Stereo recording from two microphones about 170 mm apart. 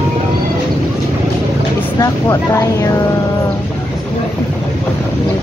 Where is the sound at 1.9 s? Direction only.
20° left (ahead or behind).